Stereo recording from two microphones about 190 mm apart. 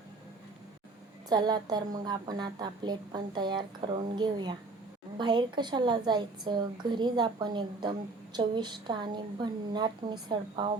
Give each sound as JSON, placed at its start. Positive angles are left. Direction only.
{"t": 1.3, "sound": "a woman's voice", "side_deg": -20}